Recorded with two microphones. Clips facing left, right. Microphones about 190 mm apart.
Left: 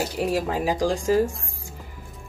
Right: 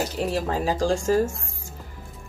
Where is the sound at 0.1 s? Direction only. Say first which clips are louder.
Left 1 dB; 10° left (ahead or behind).